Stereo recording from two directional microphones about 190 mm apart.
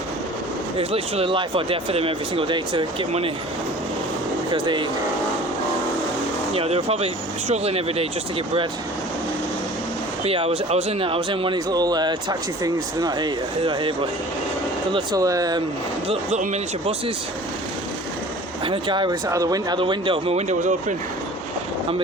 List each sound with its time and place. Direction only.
0.8 s speech: 30° right (ahead or behind)
4.5 s speech: 25° right (ahead or behind)
6.5 s speech: 30° right (ahead or behind)
10.2 s speech: 30° right (ahead or behind)
16.0 s speech: 35° right (ahead or behind)
18.6 s speech: 25° right (ahead or behind)